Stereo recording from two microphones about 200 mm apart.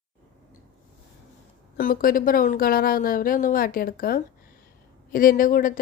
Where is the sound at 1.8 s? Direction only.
45° left (ahead or behind).